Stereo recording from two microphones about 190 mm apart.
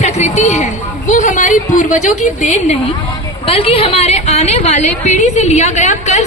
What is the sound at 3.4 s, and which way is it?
A woman's voice, 30° left (ahead or behind).